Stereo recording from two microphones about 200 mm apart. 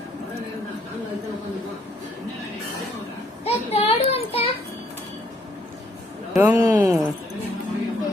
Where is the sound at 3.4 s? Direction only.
30° left (ahead or behind).